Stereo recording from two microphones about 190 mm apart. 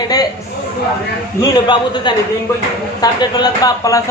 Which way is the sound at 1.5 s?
25° left (ahead or behind).